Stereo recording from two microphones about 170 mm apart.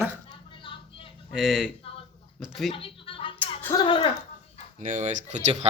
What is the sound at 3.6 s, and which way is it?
Speech, 15° left (ahead or behind).